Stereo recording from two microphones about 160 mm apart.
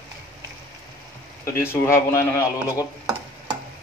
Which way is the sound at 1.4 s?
15° left (ahead or behind).